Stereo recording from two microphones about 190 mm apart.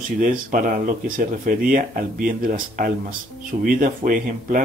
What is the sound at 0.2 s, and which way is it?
Speech, 45° right (ahead or behind).